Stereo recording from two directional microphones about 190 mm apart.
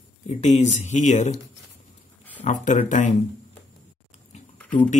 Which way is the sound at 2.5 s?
40° left (ahead or behind).